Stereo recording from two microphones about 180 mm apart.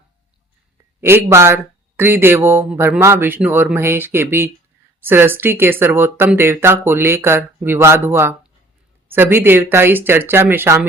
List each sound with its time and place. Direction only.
1.0 s speech: 15° right (ahead or behind)